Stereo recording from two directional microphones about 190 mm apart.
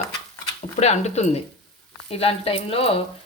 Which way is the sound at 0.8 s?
35° left (ahead or behind).